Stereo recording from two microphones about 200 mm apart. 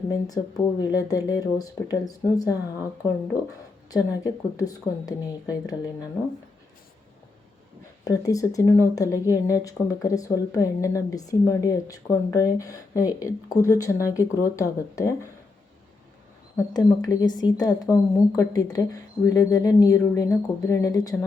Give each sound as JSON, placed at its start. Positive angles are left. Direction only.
{"t": 0.1, "sound": "a woman's voice", "side_deg": 20}
{"t": 3.9, "sound": "a woman's voice", "side_deg": 20}
{"t": 8.0, "sound": "a woman's voice", "side_deg": 15}
{"t": 16.6, "sound": "a woman's voice", "side_deg": 20}